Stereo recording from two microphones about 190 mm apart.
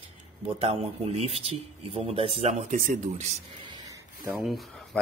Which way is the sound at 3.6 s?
20° right (ahead or behind).